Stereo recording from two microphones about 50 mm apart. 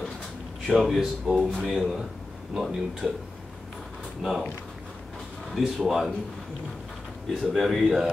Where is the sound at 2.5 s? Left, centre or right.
Centre.